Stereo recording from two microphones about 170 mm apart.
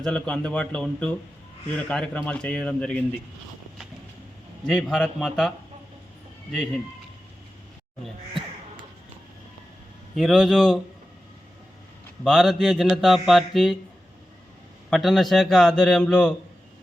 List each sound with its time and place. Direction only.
0.0 s a man's voice: 5° left (ahead or behind)
4.6 s speech: centre (ahead or behind)
10.2 s speech: centre (ahead or behind)
12.2 s speech: centre (ahead or behind)
14.8 s speech: centre (ahead or behind)